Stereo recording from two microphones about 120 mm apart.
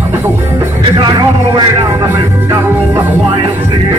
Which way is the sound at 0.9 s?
35° right (ahead or behind).